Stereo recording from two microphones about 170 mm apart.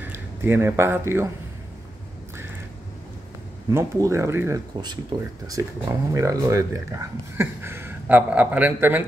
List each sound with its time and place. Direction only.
0.0 s speech: 15° right (ahead or behind)
3.7 s speech: 15° right (ahead or behind)